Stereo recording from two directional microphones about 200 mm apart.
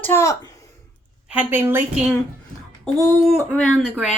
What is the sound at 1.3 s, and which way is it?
Speech, 10° right (ahead or behind).